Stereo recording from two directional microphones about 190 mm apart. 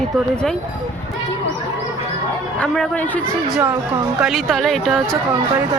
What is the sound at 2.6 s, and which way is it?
Speech, 5° left (ahead or behind).